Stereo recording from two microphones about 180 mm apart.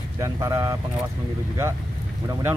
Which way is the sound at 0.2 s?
15° right (ahead or behind).